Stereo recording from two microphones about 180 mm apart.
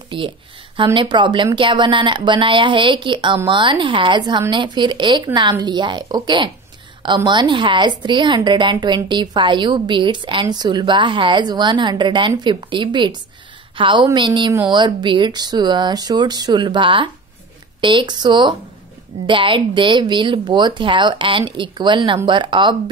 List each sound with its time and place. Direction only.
0.1 s a woman's voice: 30° right (ahead or behind)